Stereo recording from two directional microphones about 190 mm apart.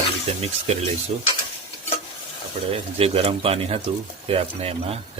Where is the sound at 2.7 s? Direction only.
30° right (ahead or behind).